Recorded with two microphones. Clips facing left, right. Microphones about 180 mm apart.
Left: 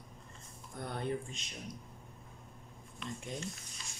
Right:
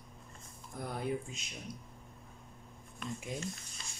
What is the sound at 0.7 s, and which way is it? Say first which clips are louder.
Speech: right 1 dB; 5° right (ahead or behind).